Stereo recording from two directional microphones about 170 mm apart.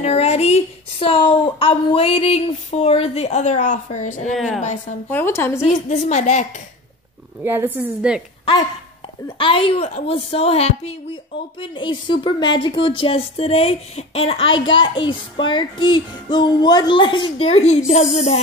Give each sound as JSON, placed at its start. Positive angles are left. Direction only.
{"t": 0.0, "sound": "a woman's voice", "side_deg": 40}
{"t": 5.1, "sound": "speech", "side_deg": 15}
{"t": 5.6, "sound": "speech", "side_deg": 40}
{"t": 7.4, "sound": "a woman's voice", "side_deg": -15}
{"t": 9.4, "sound": "a woman's voice", "side_deg": 30}